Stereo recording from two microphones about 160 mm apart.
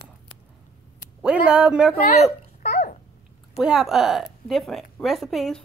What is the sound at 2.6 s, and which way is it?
Babbling, 45° left (ahead or behind).